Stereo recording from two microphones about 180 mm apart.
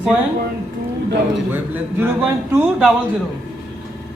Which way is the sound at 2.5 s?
5° right (ahead or behind).